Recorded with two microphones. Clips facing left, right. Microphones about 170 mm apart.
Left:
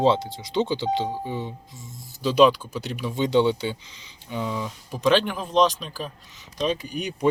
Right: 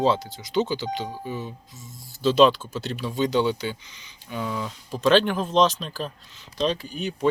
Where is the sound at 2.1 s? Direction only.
15° left (ahead or behind); by 4.4 s 30° left (ahead or behind).